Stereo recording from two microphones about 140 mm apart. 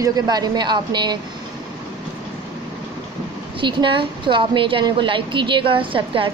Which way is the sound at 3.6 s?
35° right (ahead or behind).